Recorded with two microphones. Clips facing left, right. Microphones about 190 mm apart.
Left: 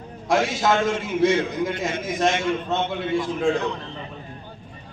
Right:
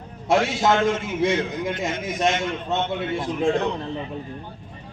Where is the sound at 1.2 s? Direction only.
20° right (ahead or behind).